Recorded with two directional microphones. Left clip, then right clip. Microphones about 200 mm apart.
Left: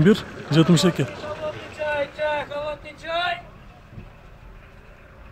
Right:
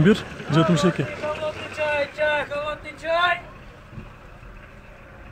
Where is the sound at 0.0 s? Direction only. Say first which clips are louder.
Left 1 dB; 10° left (ahead or behind).